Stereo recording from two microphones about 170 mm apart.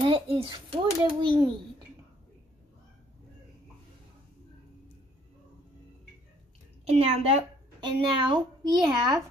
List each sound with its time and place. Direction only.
0.0 s a child's voice: 30° right (ahead or behind)
6.9 s a woman's voice: 35° right (ahead or behind)